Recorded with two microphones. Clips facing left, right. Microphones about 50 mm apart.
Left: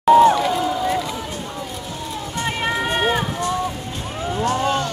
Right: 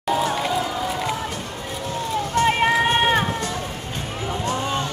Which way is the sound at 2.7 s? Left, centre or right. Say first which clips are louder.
Right 2 dB; right.